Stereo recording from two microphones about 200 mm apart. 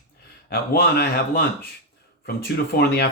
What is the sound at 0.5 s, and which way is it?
Speech, 50° left (ahead or behind).